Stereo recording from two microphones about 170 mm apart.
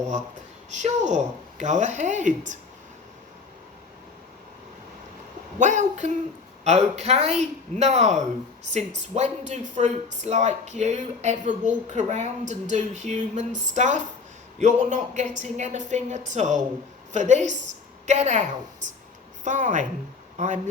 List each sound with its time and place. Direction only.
0.7 s speech: 45° right (ahead or behind)
5.5 s a woman's voice: 45° right (ahead or behind)